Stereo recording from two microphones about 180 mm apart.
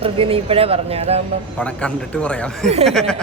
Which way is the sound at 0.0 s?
30° right (ahead or behind).